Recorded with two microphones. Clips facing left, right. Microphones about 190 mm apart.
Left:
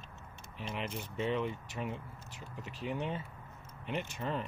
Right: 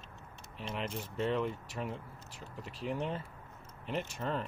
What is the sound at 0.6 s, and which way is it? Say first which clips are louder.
Speech: right 1 dB; 5° left (ahead or behind).